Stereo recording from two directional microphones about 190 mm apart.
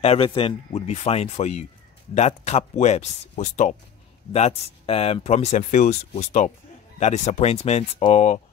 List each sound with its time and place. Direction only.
0.0 s speech: 30° left (ahead or behind)